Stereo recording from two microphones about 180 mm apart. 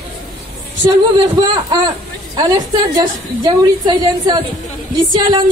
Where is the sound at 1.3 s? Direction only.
20° right (ahead or behind).